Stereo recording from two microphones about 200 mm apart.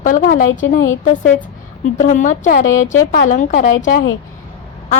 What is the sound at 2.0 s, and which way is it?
A woman's voice, 40° left (ahead or behind).